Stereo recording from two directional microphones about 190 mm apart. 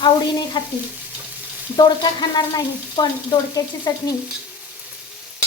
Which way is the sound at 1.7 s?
20° left (ahead or behind).